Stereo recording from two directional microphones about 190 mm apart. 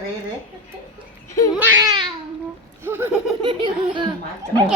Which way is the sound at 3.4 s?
25° right (ahead or behind).